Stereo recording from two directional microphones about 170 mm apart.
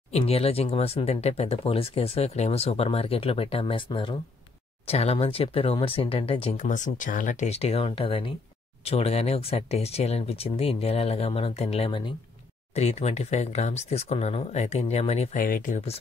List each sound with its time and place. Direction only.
0.1 s speech: 35° left (ahead or behind)
6.6 s speech: 50° left (ahead or behind)
15.3 s speech: 55° left (ahead or behind)